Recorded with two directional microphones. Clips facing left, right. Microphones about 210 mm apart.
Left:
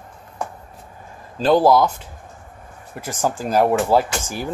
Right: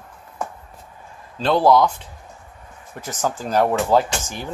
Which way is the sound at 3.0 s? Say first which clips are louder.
Left 2 dB; 10° left (ahead or behind).